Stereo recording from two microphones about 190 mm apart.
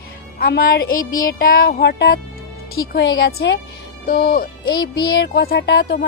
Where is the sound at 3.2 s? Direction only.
55° left (ahead or behind).